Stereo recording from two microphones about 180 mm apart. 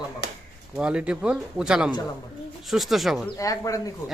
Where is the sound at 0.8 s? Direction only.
5° right (ahead or behind).